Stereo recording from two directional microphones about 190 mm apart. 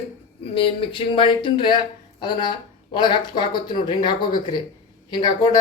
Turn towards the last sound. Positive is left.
turn(degrees=20)  # may be behind; listen again after turning